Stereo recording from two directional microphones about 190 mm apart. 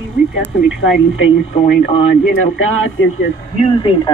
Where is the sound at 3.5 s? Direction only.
30° left (ahead or behind).